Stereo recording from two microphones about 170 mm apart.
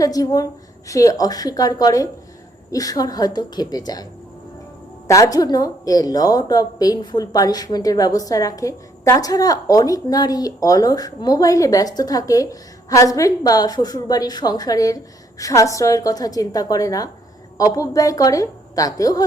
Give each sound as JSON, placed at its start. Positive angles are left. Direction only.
{"t": 0.0, "sound": "speech", "side_deg": 20}
{"t": 5.0, "sound": "speech", "side_deg": 20}